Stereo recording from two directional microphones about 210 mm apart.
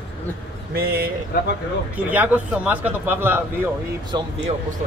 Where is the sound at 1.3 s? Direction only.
50° left (ahead or behind).